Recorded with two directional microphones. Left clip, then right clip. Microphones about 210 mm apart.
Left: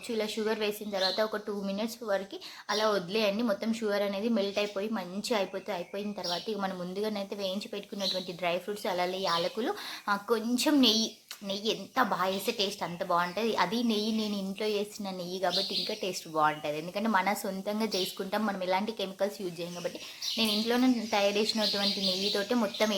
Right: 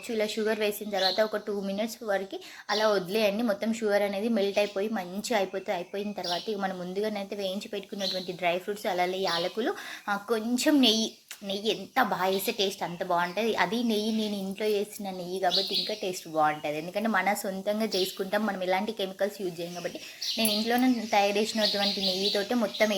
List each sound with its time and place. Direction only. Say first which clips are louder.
0.1 s a woman's voice: right 3 dB; 5° right (ahead or behind)
20.4 s a woman's voice: right 2 dB; centre (ahead or behind)